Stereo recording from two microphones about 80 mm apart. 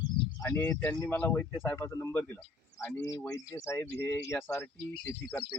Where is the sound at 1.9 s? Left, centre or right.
Left.